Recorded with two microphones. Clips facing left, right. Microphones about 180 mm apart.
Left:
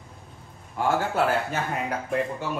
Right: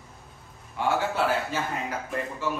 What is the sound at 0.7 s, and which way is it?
Speech, 50° left (ahead or behind).